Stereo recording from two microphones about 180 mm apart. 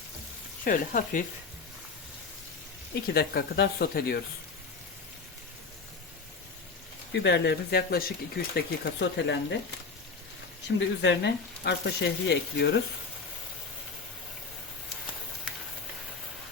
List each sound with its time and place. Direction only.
0.6 s speech: 50° left (ahead or behind)
3.1 s speech: 60° left (ahead or behind)
7.1 s speech: 75° left (ahead or behind)
10.8 s speech: 75° left (ahead or behind)